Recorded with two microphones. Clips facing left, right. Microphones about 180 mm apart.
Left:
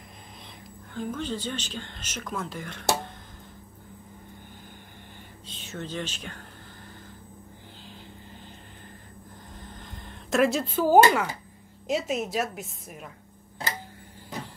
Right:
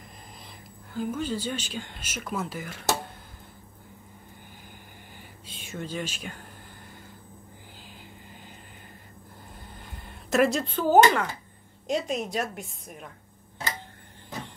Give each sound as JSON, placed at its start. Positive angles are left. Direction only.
{"t": 0.9, "sound": "speech", "side_deg": -10}
{"t": 5.5, "sound": "speech", "side_deg": -10}
{"t": 9.7, "sound": "a sound", "side_deg": -5}
{"t": 11.9, "sound": "a woman's voice", "side_deg": 5}